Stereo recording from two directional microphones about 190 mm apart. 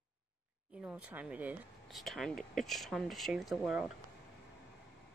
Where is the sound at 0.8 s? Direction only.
10° right (ahead or behind).